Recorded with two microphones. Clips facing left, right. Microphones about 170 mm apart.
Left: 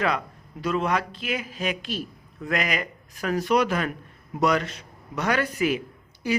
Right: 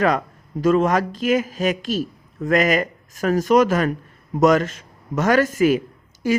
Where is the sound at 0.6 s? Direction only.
45° right (ahead or behind).